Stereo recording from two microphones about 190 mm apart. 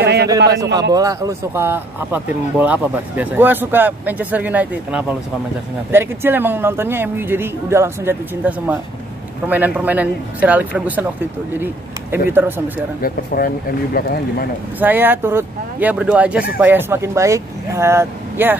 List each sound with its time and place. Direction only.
0.0 s a sound: 60° right (ahead or behind)
0.9 s speech: 20° right (ahead or behind)
13.0 s speech: 50° left (ahead or behind)
14.8 s speech: 10° right (ahead or behind)